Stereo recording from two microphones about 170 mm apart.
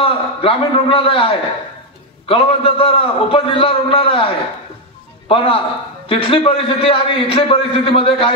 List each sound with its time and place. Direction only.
0.0 s a man's voice: 30° left (ahead or behind)